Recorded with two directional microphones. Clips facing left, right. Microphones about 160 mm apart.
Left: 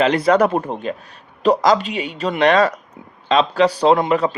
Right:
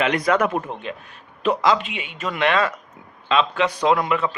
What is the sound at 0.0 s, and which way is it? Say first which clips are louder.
Speech: left 5 dB; 30° left (ahead or behind).